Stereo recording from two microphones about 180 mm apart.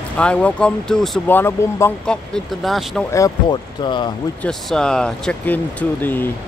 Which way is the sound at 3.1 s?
20° left (ahead or behind).